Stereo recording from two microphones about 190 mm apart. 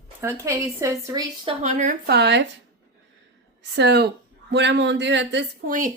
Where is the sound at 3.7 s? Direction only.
60° right (ahead or behind).